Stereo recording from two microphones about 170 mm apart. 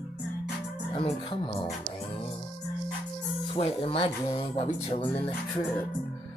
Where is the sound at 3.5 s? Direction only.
35° left (ahead or behind).